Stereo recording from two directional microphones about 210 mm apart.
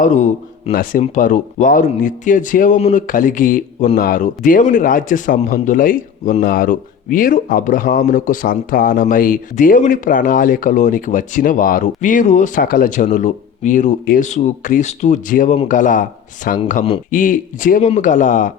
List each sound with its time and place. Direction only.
0.0 s speech: 35° left (ahead or behind)